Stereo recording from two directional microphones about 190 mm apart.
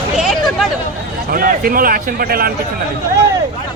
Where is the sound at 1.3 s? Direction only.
50° right (ahead or behind).